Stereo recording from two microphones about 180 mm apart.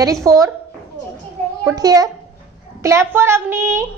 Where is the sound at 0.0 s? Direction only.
20° right (ahead or behind).